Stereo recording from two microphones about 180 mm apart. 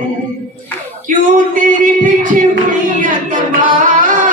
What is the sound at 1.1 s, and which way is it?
Music, 50° right (ahead or behind).